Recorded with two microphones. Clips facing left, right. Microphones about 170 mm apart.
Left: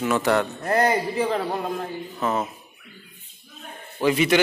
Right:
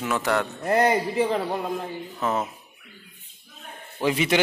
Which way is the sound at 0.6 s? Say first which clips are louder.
Right 3 dB; 15° right (ahead or behind).